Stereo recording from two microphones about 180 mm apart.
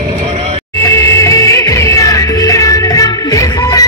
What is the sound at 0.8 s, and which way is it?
Music, 15° left (ahead or behind).